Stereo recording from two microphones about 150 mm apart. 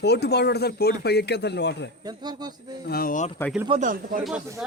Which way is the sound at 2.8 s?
85° left.